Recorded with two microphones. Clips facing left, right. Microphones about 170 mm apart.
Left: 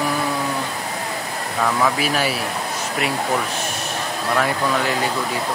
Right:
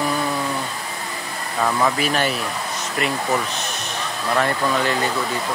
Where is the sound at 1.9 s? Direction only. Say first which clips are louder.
Even; 5° left (ahead or behind).